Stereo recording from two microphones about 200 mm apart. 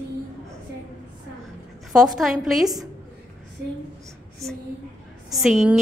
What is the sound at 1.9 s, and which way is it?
A woman's voice, centre (ahead or behind).